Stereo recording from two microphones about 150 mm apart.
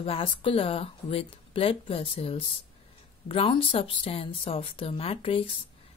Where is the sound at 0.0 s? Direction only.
35° left (ahead or behind).